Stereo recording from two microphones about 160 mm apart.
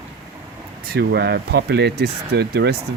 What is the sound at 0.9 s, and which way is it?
Speech, 90° right.